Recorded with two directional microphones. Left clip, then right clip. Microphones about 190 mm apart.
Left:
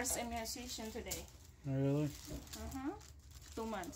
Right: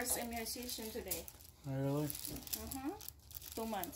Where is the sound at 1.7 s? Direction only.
15° left (ahead or behind).